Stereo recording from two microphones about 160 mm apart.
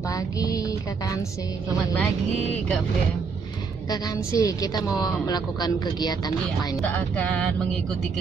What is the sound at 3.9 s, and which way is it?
A woman's voice, 20° left (ahead or behind).